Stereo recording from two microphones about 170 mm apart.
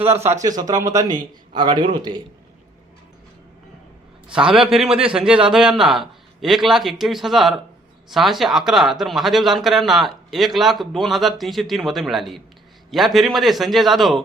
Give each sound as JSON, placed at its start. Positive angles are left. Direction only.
{"t": 0.4, "sound": "a man's voice", "side_deg": -20}
{"t": 4.5, "sound": "speech", "side_deg": -5}